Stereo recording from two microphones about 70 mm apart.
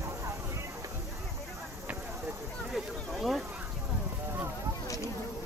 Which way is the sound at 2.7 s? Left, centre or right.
Centre.